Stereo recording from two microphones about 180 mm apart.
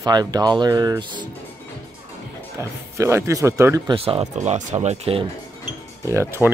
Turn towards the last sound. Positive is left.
turn(degrees=-15)  # may be behind; listen again after turning